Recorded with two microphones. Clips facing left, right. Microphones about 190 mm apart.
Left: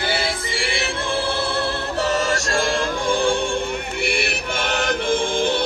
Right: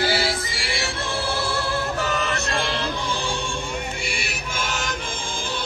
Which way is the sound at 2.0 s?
40° left (ahead or behind).